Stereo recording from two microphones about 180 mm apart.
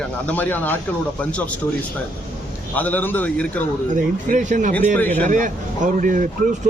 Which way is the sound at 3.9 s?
45° right (ahead or behind).